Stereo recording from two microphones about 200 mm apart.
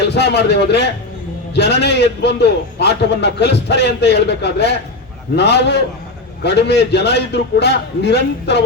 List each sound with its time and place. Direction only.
0.0 s a man's voice: 55° left (ahead or behind)